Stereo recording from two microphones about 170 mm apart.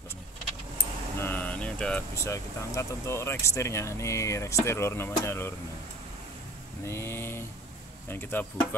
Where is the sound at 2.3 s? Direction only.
15° left (ahead or behind).